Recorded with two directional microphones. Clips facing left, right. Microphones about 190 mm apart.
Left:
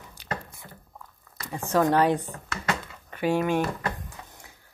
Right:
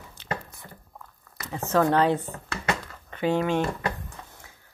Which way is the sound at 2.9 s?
10° left (ahead or behind).